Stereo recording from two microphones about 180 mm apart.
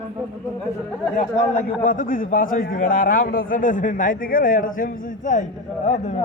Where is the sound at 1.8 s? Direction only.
50° left (ahead or behind).